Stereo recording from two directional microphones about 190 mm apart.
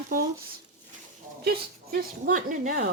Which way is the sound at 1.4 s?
50° right (ahead or behind).